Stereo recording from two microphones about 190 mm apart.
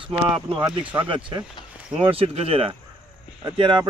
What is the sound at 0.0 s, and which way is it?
Speech, 30° right (ahead or behind).